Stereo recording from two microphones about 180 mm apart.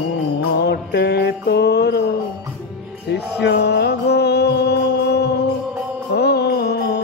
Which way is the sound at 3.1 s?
65° left (ahead or behind).